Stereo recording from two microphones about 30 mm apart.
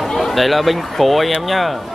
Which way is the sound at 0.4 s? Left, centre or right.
Centre.